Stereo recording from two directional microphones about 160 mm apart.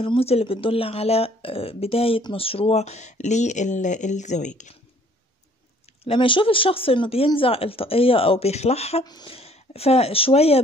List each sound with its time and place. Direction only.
0.0 s speech: 35° left (ahead or behind)
6.0 s speech: 30° left (ahead or behind)
9.0 s speech: 30° left (ahead or behind)